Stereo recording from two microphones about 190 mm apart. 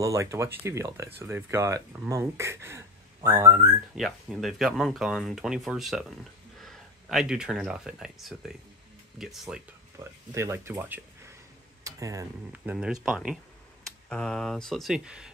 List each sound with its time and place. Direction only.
0.0 s speech: 15° right (ahead or behind)
3.9 s speech: centre (ahead or behind)
9.9 s speech: 15° right (ahead or behind)